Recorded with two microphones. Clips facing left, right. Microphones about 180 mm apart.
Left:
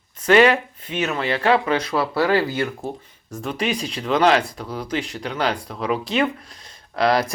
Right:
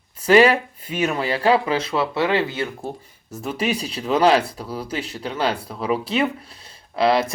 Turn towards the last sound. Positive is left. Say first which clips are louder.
# right 1 dB
turn(degrees=-30)  # may be behind; listen again after turning